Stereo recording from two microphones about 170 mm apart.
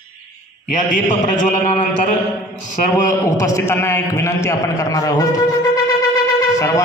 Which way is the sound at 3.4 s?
20° left (ahead or behind).